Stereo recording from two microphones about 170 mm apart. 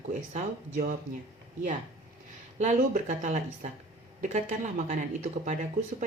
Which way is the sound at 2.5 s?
45° right (ahead or behind).